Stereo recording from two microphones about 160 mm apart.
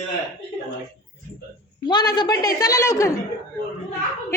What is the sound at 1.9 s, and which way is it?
A woman's voice, 30° left (ahead or behind).